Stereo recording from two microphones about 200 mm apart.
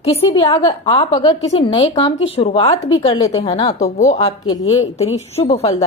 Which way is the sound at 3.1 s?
20° left (ahead or behind).